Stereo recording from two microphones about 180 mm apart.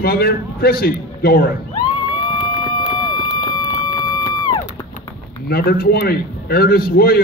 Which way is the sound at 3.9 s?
20° left (ahead or behind).